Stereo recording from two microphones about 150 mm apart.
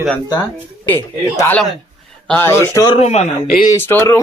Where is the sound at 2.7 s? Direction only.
30° left (ahead or behind).